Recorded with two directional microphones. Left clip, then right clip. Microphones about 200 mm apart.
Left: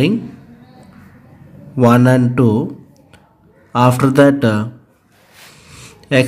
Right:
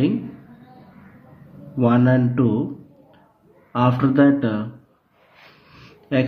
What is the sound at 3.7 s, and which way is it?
Speech, 35° left (ahead or behind).